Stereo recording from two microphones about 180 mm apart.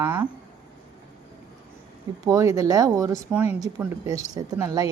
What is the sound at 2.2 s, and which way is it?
Speech, 20° right (ahead or behind).